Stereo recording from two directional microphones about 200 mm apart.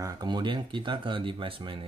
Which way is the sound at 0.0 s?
20° right (ahead or behind).